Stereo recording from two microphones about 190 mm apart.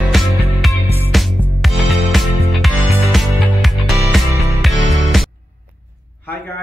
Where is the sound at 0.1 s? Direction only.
Centre (ahead or behind).